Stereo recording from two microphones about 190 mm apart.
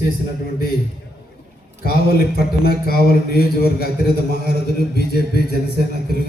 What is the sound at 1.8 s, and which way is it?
A man's voice, 55° left (ahead or behind).